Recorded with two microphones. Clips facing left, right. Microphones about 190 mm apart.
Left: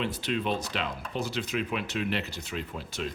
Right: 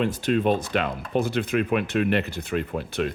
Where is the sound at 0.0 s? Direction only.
50° right (ahead or behind).